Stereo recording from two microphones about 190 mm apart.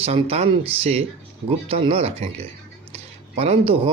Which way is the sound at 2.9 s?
30° right (ahead or behind).